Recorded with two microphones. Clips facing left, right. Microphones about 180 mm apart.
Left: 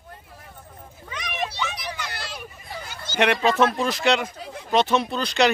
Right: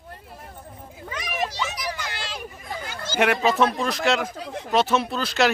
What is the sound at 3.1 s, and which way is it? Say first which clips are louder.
A man's voice: even; 5° right (ahead or behind).